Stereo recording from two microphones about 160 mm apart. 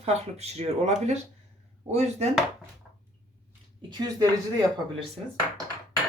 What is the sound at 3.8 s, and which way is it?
Speech, 30° right (ahead or behind).